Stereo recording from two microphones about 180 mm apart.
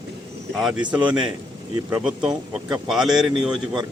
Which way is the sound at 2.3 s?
20° right (ahead or behind).